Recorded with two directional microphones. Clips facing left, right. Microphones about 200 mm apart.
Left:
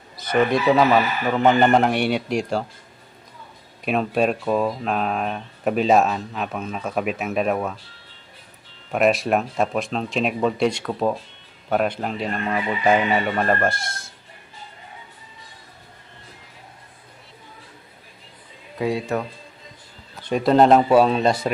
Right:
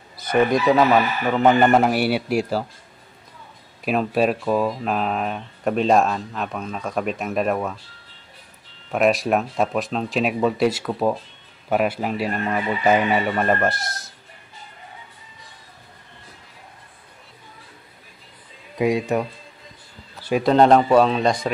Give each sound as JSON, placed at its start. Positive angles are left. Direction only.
{"t": 0.4, "sound": "speech", "side_deg": 0}
{"t": 3.8, "sound": "speech", "side_deg": 0}
{"t": 8.9, "sound": "speech", "side_deg": 0}
{"t": 18.8, "sound": "speech", "side_deg": -15}
{"t": 20.2, "sound": "speech", "side_deg": 0}